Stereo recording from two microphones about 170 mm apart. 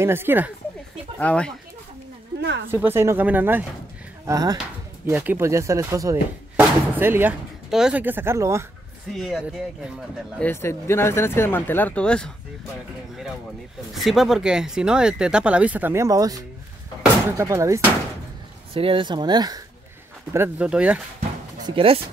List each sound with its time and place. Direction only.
0.0 s speech: 15° right (ahead or behind)
1.2 s speech: 5° left (ahead or behind)
2.7 s speech: 15° right (ahead or behind)
4.3 s speech: 20° right (ahead or behind)
9.1 s speech: centre (ahead or behind)
10.4 s speech: 15° left (ahead or behind)
13.9 s speech: centre (ahead or behind); by 17.8 s 20° right (ahead or behind)
18.7 s speech: 30° right (ahead or behind)
20.3 s speech: 10° right (ahead or behind)
21.6 s speech: 35° right (ahead or behind)